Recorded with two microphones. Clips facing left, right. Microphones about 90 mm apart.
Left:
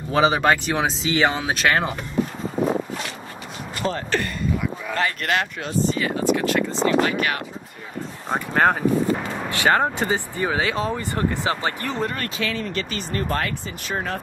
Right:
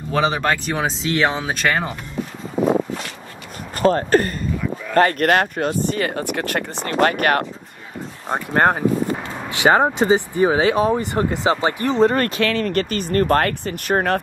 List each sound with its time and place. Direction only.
0.1 s speech: 5° left (ahead or behind)
3.7 s speech: 45° right (ahead or behind)
8.3 s speech: 5° right (ahead or behind)
9.5 s speech: 20° right (ahead or behind)
12.4 s speech: 60° right (ahead or behind)